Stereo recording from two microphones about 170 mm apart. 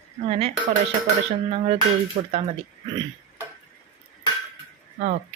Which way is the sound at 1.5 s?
40° right (ahead or behind).